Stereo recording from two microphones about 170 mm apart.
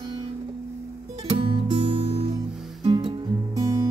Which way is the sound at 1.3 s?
30° right (ahead or behind).